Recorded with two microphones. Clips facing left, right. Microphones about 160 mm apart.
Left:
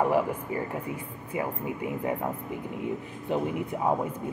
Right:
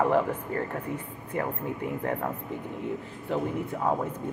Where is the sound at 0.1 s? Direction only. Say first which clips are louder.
Right 1 dB; 10° left (ahead or behind).